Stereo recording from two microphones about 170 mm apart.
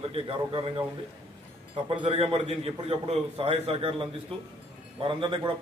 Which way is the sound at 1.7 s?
35° right (ahead or behind).